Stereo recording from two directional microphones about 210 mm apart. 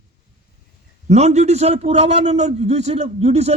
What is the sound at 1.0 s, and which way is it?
A man's voice, 30° right (ahead or behind).